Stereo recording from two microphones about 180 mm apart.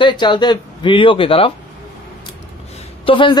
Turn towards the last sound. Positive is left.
turn(degrees=30)  # may be behind; listen again after turning